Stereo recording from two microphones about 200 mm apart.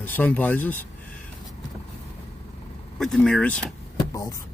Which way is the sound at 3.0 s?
5° left (ahead or behind).